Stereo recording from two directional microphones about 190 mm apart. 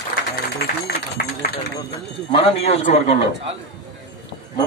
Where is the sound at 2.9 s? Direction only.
35° left (ahead or behind).